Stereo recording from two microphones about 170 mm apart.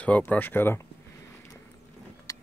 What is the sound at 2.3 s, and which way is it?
Vehicle, 20° left (ahead or behind).